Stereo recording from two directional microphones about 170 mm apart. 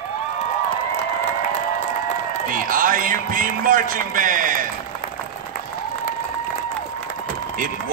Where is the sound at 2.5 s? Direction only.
55° right (ahead or behind).